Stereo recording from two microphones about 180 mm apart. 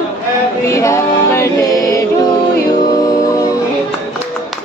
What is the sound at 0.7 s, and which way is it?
Music, 15° left (ahead or behind).